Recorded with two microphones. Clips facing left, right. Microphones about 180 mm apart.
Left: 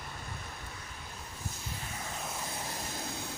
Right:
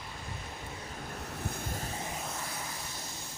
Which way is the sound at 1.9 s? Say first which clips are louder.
Right 3 dB; 25° right (ahead or behind).